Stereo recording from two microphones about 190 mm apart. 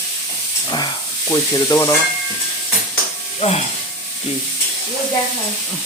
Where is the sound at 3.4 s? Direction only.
35° left (ahead or behind).